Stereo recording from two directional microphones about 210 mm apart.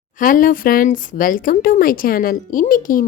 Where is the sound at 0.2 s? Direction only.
40° left (ahead or behind).